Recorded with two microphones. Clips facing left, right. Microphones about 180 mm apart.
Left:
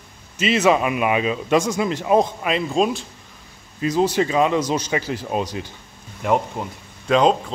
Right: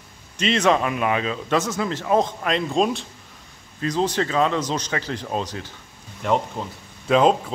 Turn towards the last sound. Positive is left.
turn(degrees=-5)  # may be behind; listen again after turning